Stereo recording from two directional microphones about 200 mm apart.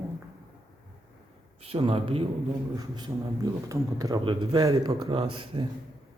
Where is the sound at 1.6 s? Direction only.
30° right (ahead or behind).